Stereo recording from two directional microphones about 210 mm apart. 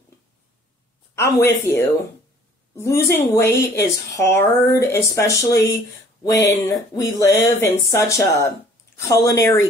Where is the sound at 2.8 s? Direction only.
10° left (ahead or behind).